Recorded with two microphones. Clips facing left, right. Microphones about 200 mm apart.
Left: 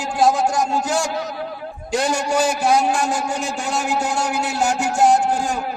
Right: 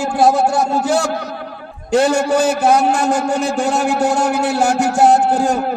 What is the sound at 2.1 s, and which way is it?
A man's voice, 60° right (ahead or behind).